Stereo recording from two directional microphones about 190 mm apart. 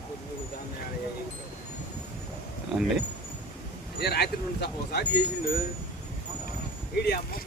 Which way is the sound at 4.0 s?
60° left (ahead or behind).